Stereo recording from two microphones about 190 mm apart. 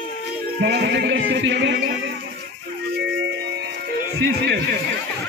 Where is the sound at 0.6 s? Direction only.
60° right (ahead or behind).